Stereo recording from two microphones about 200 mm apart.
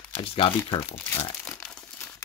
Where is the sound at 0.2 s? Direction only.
25° left (ahead or behind).